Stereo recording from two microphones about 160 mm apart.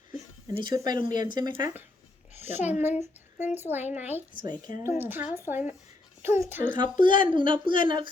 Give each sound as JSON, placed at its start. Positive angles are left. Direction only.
{"t": 0.4, "sound": "speech", "side_deg": -20}
{"t": 1.0, "sound": "speech", "side_deg": 55}
{"t": 2.4, "sound": "a child's voice", "side_deg": -10}
{"t": 6.7, "sound": "speech", "side_deg": -30}